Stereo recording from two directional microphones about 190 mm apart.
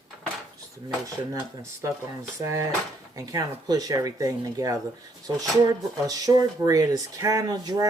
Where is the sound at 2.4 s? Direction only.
15° right (ahead or behind).